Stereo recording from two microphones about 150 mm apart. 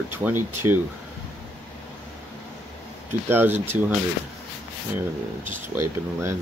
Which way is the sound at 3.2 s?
15° right (ahead or behind).